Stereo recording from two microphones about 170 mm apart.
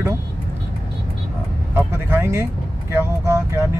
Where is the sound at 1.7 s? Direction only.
15° right (ahead or behind).